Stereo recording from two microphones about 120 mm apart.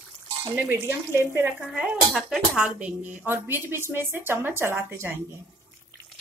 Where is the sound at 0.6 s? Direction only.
15° right (ahead or behind).